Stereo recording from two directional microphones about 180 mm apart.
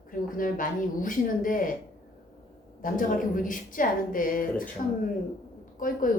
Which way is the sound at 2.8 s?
50° left (ahead or behind).